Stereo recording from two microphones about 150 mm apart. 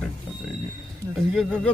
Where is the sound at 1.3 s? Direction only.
5° left (ahead or behind).